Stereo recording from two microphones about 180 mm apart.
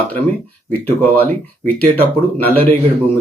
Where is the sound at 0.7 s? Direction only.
10° left (ahead or behind).